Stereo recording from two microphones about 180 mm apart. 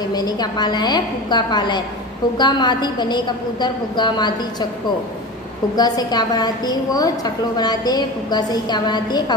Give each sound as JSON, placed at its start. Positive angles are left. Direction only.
{"t": 0.1, "sound": "a woman's voice", "side_deg": 20}
{"t": 5.8, "sound": "a woman's voice", "side_deg": 20}